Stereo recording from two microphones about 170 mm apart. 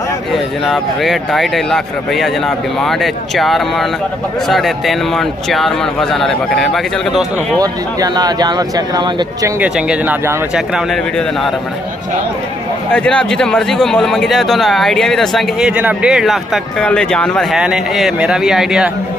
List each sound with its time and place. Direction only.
0.3 s speech: centre (ahead or behind)
7.5 s speech: 20° right (ahead or behind)
9.6 s speech: 5° right (ahead or behind)
12.9 s speech: 5° left (ahead or behind)